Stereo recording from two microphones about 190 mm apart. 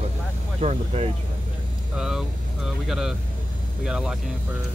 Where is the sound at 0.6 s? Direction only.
35° right (ahead or behind).